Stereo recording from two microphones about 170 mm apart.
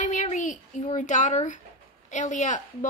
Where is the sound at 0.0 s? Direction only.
45° left (ahead or behind).